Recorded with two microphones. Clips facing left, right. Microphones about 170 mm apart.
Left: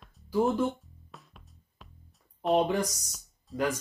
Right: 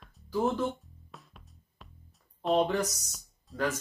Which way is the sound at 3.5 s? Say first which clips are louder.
Left 3 dB; centre (ahead or behind).